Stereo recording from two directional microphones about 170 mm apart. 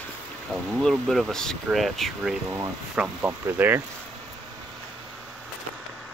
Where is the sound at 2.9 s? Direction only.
10° right (ahead or behind).